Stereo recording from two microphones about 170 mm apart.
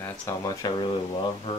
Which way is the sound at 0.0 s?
20° left (ahead or behind).